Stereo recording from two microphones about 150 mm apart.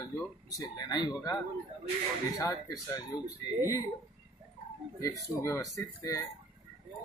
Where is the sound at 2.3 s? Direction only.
20° left (ahead or behind).